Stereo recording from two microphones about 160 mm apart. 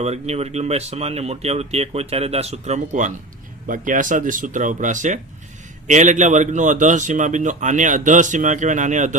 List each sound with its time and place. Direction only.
0.0 s a man's voice: 40° right (ahead or behind)